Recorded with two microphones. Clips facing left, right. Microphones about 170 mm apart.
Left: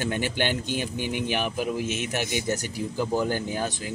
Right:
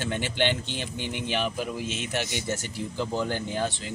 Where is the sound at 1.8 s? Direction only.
55° left (ahead or behind).